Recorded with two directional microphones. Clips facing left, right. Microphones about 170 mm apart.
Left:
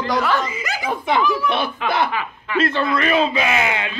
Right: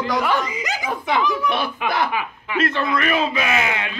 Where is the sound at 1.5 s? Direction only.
25° left (ahead or behind).